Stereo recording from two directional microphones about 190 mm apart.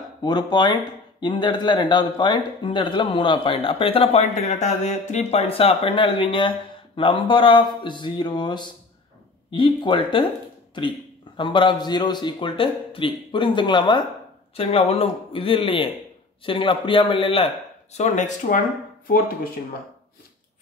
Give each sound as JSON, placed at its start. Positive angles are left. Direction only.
{"t": 0.2, "sound": "speech", "side_deg": 20}